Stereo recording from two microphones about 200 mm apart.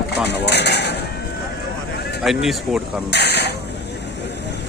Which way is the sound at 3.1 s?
55° left (ahead or behind).